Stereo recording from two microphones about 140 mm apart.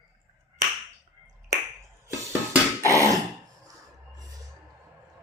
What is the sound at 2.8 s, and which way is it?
Throat clearing, 25° right (ahead or behind).